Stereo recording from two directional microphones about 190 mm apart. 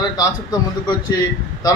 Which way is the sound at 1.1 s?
20° left (ahead or behind).